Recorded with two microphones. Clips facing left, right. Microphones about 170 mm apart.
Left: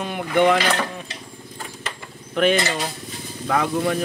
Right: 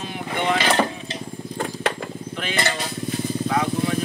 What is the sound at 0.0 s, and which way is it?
Speech, 55° left (ahead or behind).